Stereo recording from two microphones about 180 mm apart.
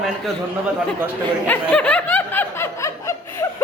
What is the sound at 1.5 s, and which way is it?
Snicker, 5° left (ahead or behind).